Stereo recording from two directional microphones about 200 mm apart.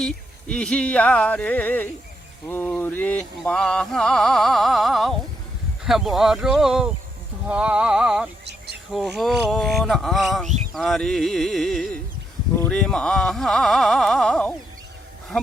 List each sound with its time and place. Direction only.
0.0 s music: 5° left (ahead or behind)
8.4 s a sound: 55° right (ahead or behind)
8.9 s music: centre (ahead or behind)